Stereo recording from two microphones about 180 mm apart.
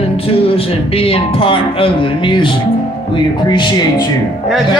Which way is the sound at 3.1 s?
25° left (ahead or behind).